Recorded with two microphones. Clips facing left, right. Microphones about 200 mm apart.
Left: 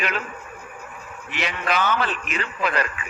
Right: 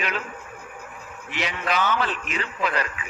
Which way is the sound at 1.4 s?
60° left (ahead or behind).